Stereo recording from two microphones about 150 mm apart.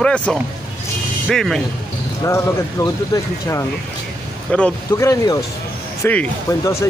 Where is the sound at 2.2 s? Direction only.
20° left (ahead or behind).